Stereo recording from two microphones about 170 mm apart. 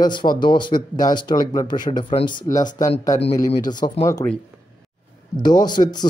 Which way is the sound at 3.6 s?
25° left (ahead or behind).